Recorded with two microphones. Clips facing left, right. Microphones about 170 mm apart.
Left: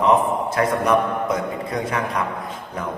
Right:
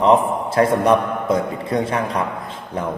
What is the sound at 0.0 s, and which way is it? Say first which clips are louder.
A man's voice: right 2 dB; 30° right (ahead or behind).